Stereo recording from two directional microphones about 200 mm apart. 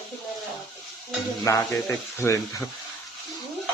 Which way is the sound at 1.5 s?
15° left (ahead or behind).